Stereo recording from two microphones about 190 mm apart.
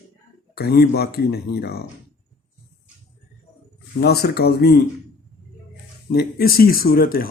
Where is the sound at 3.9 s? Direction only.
55° left (ahead or behind).